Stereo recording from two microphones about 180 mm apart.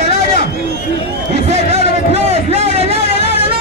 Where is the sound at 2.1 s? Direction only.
35° right (ahead or behind).